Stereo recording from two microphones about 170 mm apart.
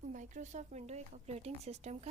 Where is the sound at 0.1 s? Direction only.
45° right (ahead or behind).